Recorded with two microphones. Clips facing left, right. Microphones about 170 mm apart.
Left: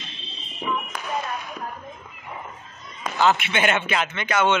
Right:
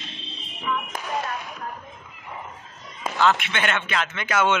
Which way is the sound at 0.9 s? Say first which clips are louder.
Right 1 dB; 45° right (ahead or behind).